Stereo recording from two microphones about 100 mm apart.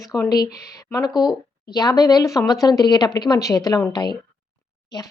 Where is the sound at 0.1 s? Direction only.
35° left (ahead or behind).